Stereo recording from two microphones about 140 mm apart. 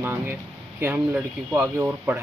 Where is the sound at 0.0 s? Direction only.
15° right (ahead or behind).